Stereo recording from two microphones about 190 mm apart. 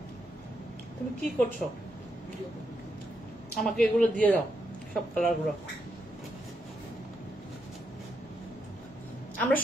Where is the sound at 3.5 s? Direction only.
Centre (ahead or behind).